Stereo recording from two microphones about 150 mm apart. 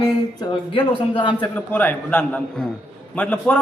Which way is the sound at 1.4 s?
10° left (ahead or behind).